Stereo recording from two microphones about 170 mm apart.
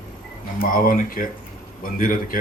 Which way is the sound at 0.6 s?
55° left (ahead or behind).